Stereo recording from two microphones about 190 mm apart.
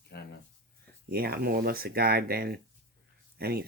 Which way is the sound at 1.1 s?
50° right (ahead or behind).